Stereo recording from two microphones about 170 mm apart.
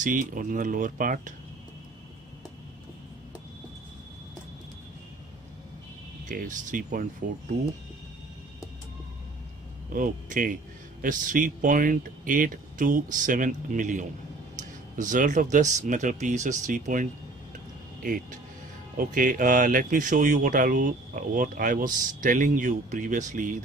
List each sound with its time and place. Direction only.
0.0 s speech: 50° right (ahead or behind)
6.2 s speech: 50° right (ahead or behind)
9.9 s speech: 55° right (ahead or behind)